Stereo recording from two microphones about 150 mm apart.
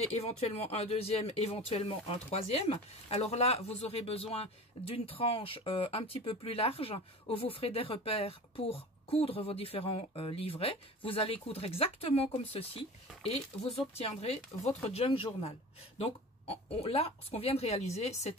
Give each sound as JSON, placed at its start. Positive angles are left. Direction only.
{"t": 0.1, "sound": "speech", "side_deg": 45}